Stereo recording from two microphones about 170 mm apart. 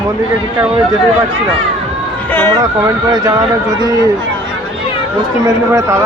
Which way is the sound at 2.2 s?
10° left (ahead or behind).